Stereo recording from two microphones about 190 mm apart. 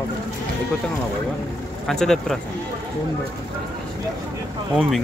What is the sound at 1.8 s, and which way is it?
Speech, centre (ahead or behind).